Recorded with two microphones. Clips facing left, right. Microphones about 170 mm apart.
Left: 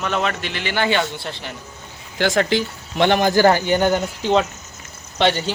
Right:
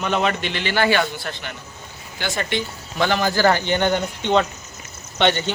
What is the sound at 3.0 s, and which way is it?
A man's voice, 20° left (ahead or behind).